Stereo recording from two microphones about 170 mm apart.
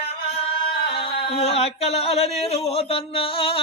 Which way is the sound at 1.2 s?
35° left (ahead or behind).